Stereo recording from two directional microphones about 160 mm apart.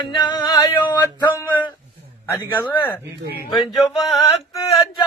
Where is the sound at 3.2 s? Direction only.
80° right.